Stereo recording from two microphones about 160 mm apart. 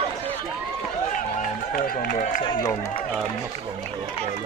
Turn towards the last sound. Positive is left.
turn(degrees=30)  # may be behind; listen again after turning